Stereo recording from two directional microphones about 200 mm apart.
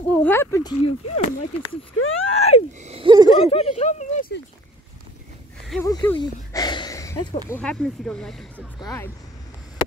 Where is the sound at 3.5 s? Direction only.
30° left (ahead or behind).